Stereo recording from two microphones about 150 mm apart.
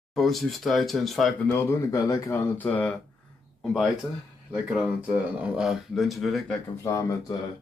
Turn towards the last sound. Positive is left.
turn(degrees=20)  # may be behind; listen again after turning